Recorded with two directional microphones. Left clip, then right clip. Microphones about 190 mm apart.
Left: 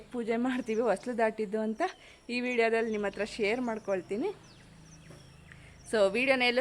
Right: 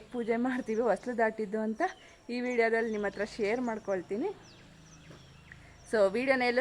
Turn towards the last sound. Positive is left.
turn(degrees=0)  # may be behind; listen again after turning